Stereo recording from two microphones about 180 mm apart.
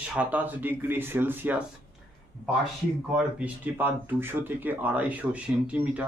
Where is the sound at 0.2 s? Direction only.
10° right (ahead or behind).